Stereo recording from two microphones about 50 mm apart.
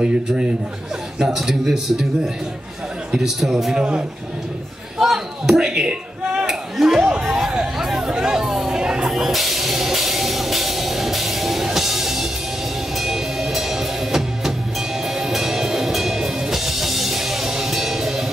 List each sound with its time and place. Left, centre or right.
0.0 s a man's voice: centre
1.2 s a man's voice: centre
3.7 s a man's voice: centre
4.9 s a sound: centre
7.5 s hubbub: centre
8.1 s chatter: centre
9.1 s music: centre